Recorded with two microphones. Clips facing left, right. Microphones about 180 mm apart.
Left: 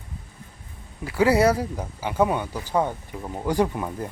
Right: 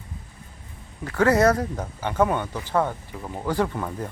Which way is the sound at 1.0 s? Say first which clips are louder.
Even; 10° left (ahead or behind).